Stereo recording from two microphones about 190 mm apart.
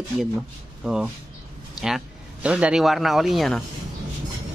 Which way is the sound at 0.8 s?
5° right (ahead or behind).